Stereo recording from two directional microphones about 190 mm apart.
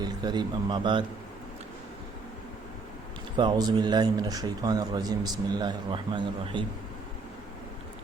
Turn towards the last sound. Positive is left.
turn(degrees=-25)  # may be behind; listen again after turning